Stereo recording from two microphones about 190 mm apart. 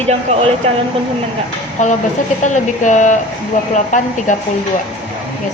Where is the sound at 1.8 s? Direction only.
40° left (ahead or behind).